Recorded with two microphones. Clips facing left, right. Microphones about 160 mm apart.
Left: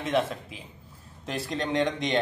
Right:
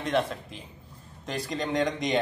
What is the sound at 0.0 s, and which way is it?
Speech, centre (ahead or behind).